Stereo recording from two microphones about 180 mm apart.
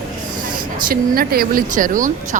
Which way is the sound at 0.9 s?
55° right (ahead or behind).